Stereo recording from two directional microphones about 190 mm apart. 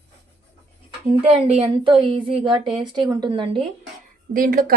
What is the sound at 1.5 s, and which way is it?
A woman's voice, 30° right (ahead or behind).